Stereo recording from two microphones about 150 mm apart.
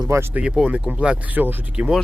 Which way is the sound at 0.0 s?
15° right (ahead or behind).